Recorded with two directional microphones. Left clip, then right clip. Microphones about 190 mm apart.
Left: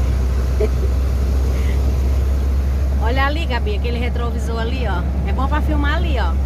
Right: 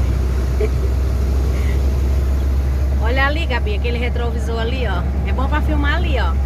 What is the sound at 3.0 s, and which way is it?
Vehicle, 15° left (ahead or behind).